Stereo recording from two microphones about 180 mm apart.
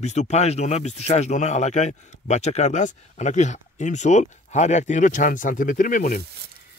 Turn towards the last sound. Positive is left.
turn(degrees=45)  # may be behind; listen again after turning